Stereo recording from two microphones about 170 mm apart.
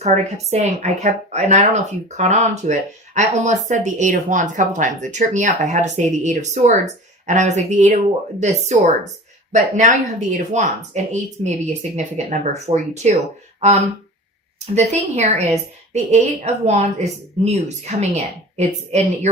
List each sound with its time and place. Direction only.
0.5 s a woman's voice: 40° right (ahead or behind)